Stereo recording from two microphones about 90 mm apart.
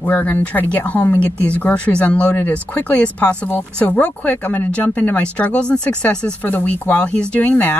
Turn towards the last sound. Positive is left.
turn(degrees=20)  # may be behind; listen again after turning